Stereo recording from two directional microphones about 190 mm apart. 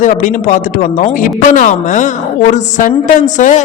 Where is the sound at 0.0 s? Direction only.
40° left (ahead or behind).